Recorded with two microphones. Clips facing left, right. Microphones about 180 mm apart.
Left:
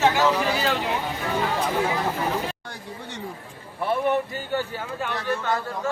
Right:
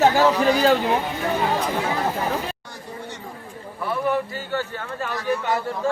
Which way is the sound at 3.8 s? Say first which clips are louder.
Left 1 dB; 25° left (ahead or behind).